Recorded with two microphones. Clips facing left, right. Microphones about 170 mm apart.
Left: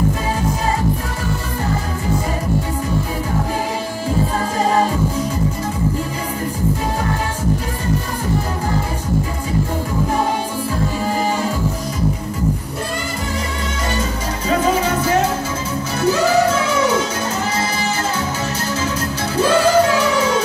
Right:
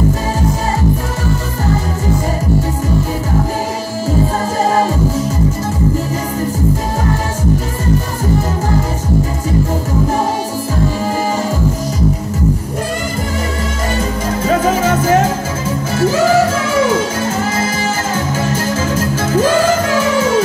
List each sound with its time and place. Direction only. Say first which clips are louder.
14.4 s music: right 3 dB; 45° right (ahead or behind)
18.1 s music: right 5 dB; 50° right (ahead or behind)